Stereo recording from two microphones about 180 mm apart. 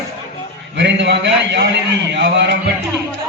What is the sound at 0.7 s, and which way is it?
A man's voice, 75° right (ahead or behind).